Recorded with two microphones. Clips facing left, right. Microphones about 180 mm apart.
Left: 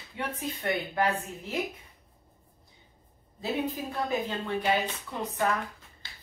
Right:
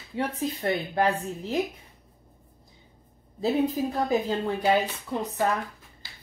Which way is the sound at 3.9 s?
35° right (ahead or behind).